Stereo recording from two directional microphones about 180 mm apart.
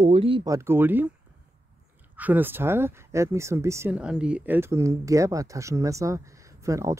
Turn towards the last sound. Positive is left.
turn(degrees=-15)  # may be behind; listen again after turning